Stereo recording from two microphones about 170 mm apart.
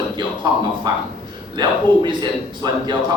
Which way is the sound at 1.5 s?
25° right (ahead or behind).